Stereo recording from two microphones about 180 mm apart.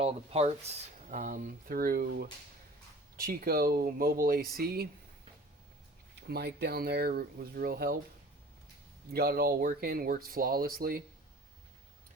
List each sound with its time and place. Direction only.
0.0 s speech: 35° right (ahead or behind); by 4.9 s 60° right (ahead or behind)
6.2 s speech: 65° right (ahead or behind)
9.1 s speech: 60° right (ahead or behind)